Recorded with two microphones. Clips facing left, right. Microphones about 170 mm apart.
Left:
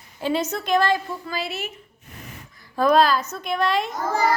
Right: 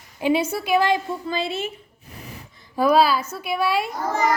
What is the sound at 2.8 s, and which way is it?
A woman's voice, 10° right (ahead or behind).